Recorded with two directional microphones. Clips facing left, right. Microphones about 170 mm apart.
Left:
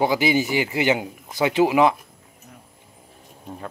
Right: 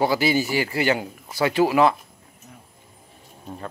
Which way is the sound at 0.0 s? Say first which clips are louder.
Left 1 dB; 15° left (ahead or behind).